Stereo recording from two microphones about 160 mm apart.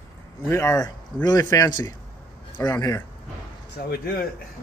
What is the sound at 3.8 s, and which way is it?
Speech, 80° left.